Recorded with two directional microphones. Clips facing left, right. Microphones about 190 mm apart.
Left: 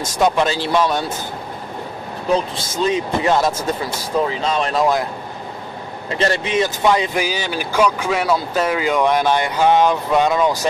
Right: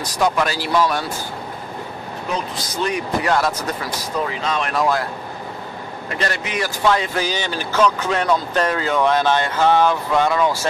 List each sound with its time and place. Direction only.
0.0 s speech: 25° left (ahead or behind)
2.3 s speech: 25° left (ahead or behind)
6.0 s speech: 25° left (ahead or behind)